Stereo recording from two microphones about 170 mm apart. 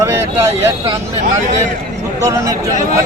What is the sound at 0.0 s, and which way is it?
Speech, 15° right (ahead or behind).